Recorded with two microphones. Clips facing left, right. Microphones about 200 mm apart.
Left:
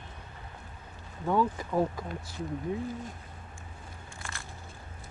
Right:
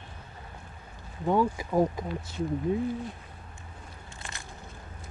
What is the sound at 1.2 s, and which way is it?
Speech, 15° right (ahead or behind).